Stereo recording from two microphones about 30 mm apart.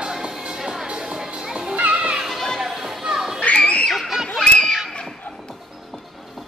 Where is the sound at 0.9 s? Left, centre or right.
Right.